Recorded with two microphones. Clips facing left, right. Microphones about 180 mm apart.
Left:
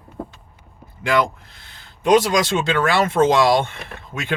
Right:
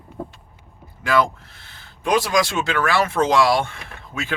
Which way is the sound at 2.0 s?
20° left (ahead or behind).